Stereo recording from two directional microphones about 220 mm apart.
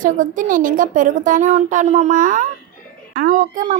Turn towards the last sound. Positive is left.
turn(degrees=-35)  # may be behind; listen again after turning